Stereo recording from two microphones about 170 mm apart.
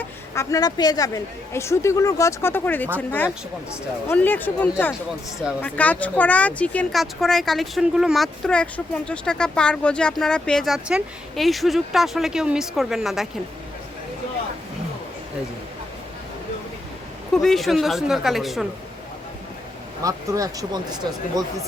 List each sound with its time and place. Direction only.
0.0 s a woman's voice: 20° left (ahead or behind)
4.1 s a woman's voice: 10° left (ahead or behind)
17.3 s speech: centre (ahead or behind)
20.0 s speech: 20° right (ahead or behind)